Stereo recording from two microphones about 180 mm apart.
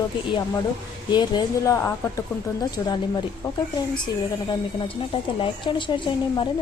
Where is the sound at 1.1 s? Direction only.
20° left (ahead or behind).